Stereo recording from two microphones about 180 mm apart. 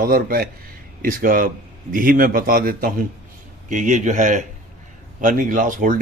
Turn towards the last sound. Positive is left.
turn(degrees=-45)  # may be behind; listen again after turning